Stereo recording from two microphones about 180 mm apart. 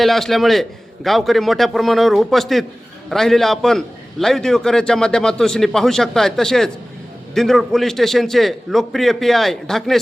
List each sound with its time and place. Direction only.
0.0 s a man's voice: centre (ahead or behind)